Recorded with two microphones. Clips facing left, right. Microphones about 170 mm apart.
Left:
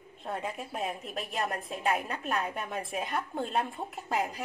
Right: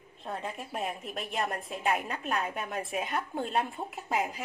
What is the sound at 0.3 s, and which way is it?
A woman's voice, centre (ahead or behind).